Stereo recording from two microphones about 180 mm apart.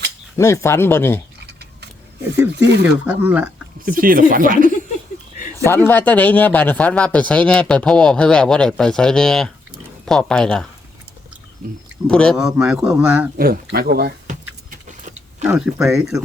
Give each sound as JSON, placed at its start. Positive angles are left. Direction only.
{"t": 0.3, "sound": "speech", "side_deg": 15}
{"t": 3.1, "sound": "speech", "side_deg": -10}
{"t": 3.8, "sound": "speech", "side_deg": -50}
{"t": 5.6, "sound": "a man's voice", "side_deg": 10}
{"t": 12.0, "sound": "a man's voice", "side_deg": 5}
{"t": 13.3, "sound": "speech", "side_deg": -55}
{"t": 14.8, "sound": "vehicle", "side_deg": -40}
{"t": 15.4, "sound": "a man's voice", "side_deg": -5}